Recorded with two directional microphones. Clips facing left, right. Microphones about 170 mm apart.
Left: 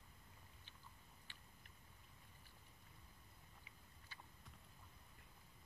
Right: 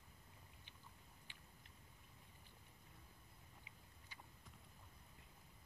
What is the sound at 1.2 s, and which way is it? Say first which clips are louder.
Tick-tock: right 1 dB; 15° right (ahead or behind).